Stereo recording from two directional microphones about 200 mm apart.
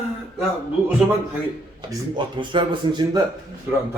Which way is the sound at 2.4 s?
25° right (ahead or behind).